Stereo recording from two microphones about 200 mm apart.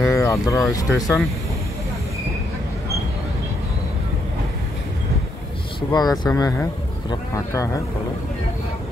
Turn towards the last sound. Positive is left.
turn(degrees=15)  # may be behind; listen again after turning